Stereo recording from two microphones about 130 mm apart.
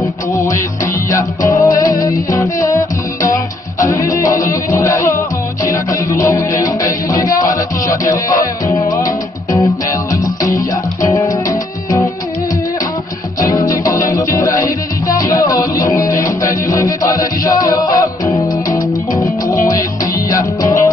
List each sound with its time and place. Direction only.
0.0 s music: 20° left (ahead or behind)
13.4 s music: 25° left (ahead or behind)